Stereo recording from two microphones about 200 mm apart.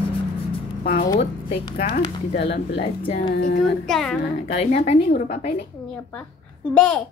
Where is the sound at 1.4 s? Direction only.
25° left (ahead or behind).